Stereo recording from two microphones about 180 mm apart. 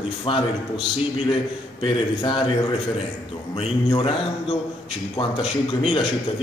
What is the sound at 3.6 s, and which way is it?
A man's voice, 35° left (ahead or behind).